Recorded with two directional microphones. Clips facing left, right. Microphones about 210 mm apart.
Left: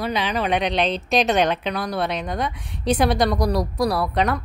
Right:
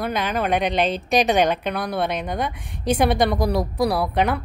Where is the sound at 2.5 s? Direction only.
50° right (ahead or behind).